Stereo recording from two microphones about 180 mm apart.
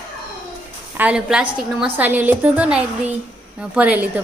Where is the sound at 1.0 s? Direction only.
5° right (ahead or behind).